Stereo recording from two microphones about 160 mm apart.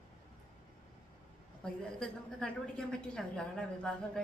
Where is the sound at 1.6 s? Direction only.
5° left (ahead or behind).